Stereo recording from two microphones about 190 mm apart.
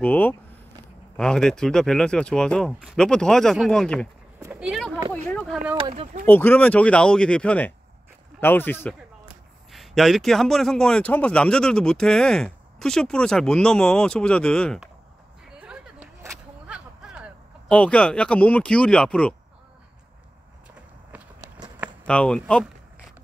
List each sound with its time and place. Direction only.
0.0 s speech: 10° left (ahead or behind)
4.4 s a sound: 10° right (ahead or behind); by 5.6 s 5° left (ahead or behind)
5.8 s speech: 30° right (ahead or behind)
6.2 s speech: 10° left (ahead or behind)
9.7 s speech: centre (ahead or behind)
15.5 s a sound: 5° right (ahead or behind)
17.6 s speech: 5° left (ahead or behind)
21.6 s a sound: 10° right (ahead or behind)
22.0 s speech: 5° left (ahead or behind)